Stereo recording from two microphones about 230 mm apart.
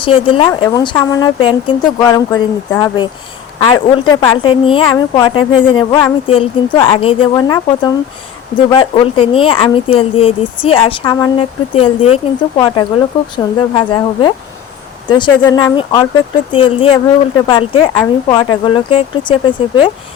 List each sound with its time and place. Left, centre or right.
0.0 s speech: left